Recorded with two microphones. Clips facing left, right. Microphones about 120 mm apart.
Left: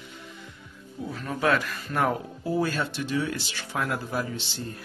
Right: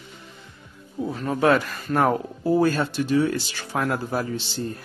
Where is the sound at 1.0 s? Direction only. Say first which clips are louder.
Right 6 dB; 30° right (ahead or behind).